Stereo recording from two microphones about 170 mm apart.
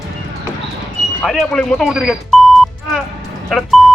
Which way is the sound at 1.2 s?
5° left (ahead or behind).